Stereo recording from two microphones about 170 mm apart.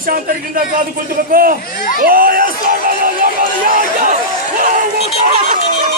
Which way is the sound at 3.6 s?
50° right (ahead or behind).